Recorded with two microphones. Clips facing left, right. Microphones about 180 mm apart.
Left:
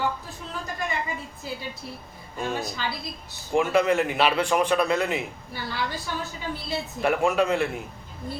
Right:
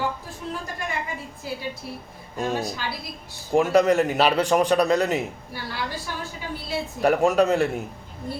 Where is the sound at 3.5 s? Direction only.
40° right (ahead or behind).